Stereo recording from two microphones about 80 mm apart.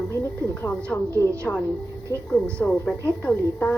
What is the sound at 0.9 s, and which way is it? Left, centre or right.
A woman's voice, centre.